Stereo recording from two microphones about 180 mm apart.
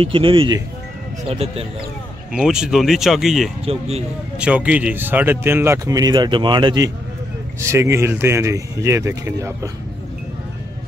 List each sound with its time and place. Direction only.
0.0 s speech: 30° right (ahead or behind)
2.3 s speech: 5° right (ahead or behind)
3.6 s speech: 35° right (ahead or behind)
4.4 s speech: 5° right (ahead or behind)